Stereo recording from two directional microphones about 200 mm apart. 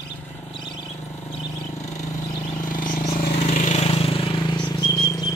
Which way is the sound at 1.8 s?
35° left (ahead or behind).